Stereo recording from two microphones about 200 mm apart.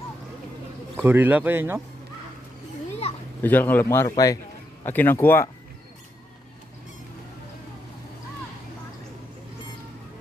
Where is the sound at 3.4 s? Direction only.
10° left (ahead or behind).